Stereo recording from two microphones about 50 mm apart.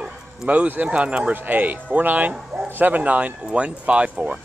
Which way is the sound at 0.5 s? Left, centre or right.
Right.